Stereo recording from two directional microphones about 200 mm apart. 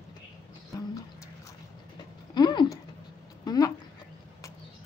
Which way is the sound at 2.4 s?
20° left (ahead or behind).